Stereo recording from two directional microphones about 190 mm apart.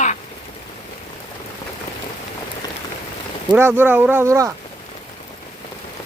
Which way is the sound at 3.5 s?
10° right (ahead or behind).